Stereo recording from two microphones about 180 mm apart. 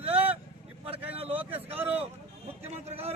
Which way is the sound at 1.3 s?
10° right (ahead or behind).